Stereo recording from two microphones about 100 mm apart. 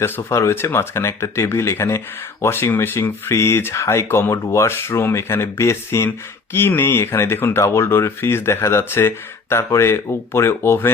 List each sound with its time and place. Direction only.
0.0 s speech: 30° left (ahead or behind)